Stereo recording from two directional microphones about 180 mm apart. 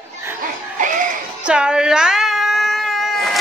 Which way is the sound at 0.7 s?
45° right (ahead or behind).